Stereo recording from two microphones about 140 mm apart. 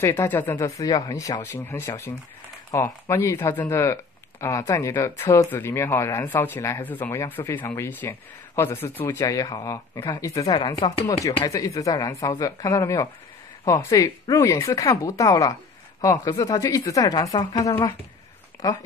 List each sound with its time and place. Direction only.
0.0 s speech: 15° left (ahead or behind)
0.7 s speech: 25° left (ahead or behind)